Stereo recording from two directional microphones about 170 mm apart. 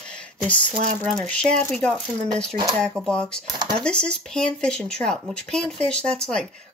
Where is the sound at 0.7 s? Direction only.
45° right (ahead or behind).